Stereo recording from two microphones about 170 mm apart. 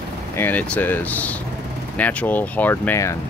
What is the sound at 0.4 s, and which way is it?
Speech, 10° left (ahead or behind).